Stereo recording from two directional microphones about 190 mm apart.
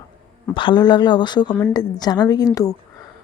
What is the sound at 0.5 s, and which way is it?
Speech, 25° left (ahead or behind).